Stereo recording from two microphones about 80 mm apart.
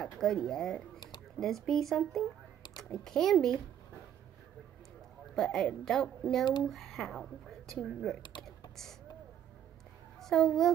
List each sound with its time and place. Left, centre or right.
0.0 s speech: centre
0.9 s a sound: left
1.4 s a woman's voice: centre
5.3 s a woman's voice: centre
10.2 s a child's voice: centre